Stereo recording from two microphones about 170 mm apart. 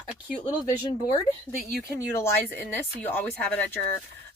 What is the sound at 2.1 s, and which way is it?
Speech, 15° left (ahead or behind).